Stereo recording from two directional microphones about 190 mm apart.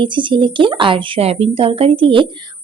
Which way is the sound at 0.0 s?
25° right (ahead or behind).